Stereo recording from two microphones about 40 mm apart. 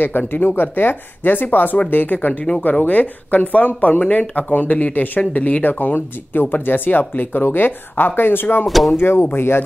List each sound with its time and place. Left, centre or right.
0.0 s speech: left
8.6 s speech: centre
8.9 s speech: left